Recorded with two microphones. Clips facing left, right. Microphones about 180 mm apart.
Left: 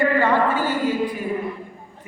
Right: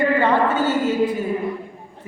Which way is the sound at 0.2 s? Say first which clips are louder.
Right 1 dB; 20° right (ahead or behind).